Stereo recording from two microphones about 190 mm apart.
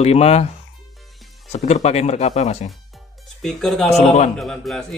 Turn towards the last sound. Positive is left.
turn(degrees=0)  # may be behind; listen again after turning